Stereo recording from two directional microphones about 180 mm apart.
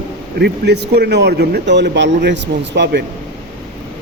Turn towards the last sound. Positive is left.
turn(degrees=-70)  # may be behind; listen again after turning